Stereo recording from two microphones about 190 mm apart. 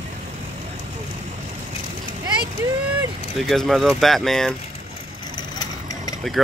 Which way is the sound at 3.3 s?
Centre (ahead or behind).